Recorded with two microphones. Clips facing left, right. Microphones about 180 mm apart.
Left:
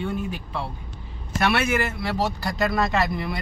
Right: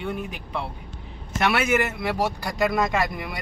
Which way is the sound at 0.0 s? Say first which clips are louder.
Left 2 dB; 15° right (ahead or behind).